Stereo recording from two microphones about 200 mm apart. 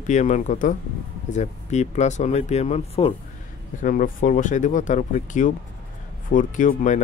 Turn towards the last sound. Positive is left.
turn(degrees=40)  # may be behind; listen again after turning